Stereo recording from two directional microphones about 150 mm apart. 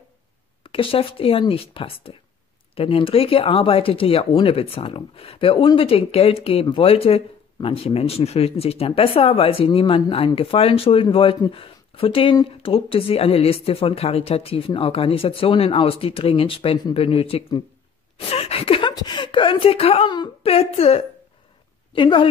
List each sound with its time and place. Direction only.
0.7 s a woman's voice: 35° left (ahead or behind)